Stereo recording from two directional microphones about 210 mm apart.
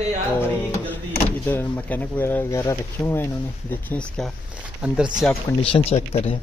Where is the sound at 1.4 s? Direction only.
10° left (ahead or behind).